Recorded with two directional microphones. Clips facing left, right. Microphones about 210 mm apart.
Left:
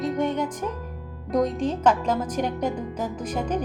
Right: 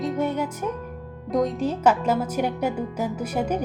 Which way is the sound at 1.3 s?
Centre (ahead or behind).